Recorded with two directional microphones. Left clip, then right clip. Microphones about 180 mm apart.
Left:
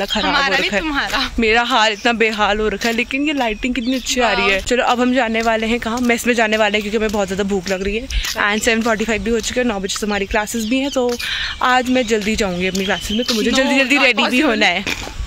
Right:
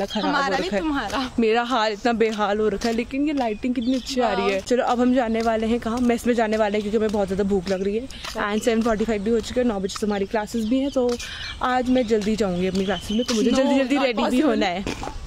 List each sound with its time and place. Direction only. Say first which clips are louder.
0.3 s speech: left 6 dB; 25° right (ahead or behind)
1.4 s speech: left 6 dB; 5° right (ahead or behind)